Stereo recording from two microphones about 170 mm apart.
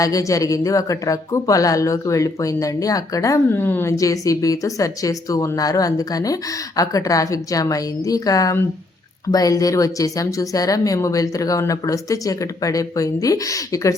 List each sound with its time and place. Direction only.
0.0 s a woman's voice: 20° left (ahead or behind)